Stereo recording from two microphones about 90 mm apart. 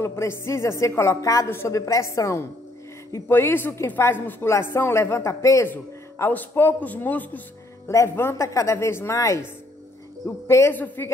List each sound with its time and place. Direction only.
0.0 s a woman's voice: 30° left (ahead or behind)
1.5 s a woman's voice: 25° left (ahead or behind)
1.8 s a woman's voice: 35° left (ahead or behind)
5.7 s a woman's voice: 25° left (ahead or behind)
7.9 s a woman's voice: 30° left (ahead or behind)
10.7 s a woman's voice: 20° left (ahead or behind)